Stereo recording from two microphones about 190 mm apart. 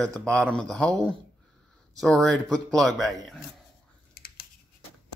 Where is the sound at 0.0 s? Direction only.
5° left (ahead or behind).